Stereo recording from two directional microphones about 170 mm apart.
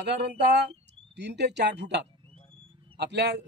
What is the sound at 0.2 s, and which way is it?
Speech, 85° right.